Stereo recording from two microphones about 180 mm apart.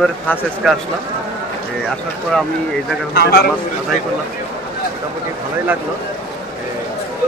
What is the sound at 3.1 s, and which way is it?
Speech, 60° left (ahead or behind).